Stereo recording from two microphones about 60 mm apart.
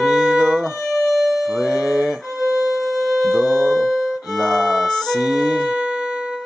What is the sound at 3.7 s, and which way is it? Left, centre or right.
Violin, centre.